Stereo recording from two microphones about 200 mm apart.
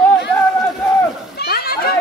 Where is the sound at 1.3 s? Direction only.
50° left (ahead or behind).